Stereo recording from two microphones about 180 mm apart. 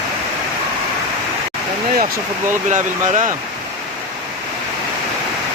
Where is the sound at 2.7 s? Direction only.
45° right (ahead or behind).